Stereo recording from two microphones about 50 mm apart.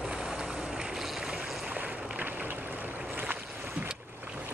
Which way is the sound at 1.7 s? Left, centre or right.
Right.